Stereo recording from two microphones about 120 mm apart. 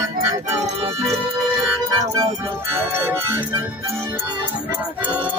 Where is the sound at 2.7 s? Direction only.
20° right (ahead or behind).